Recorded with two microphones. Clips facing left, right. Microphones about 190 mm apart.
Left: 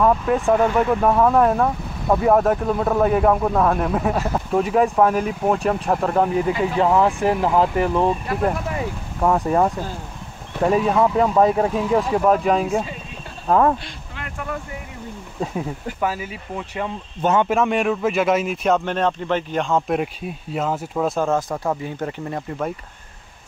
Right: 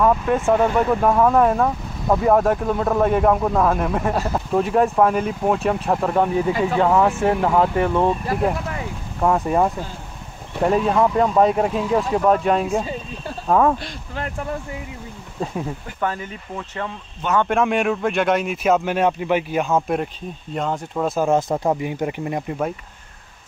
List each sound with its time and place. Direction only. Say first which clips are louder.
0.0 s speech: even; centre (ahead or behind)
9.2 s speech: even; centre (ahead or behind)
15.4 s speech: left 1 dB; 5° left (ahead or behind)
17.5 s speech: even; centre (ahead or behind)
21.3 s speech: right 3 dB; 20° right (ahead or behind)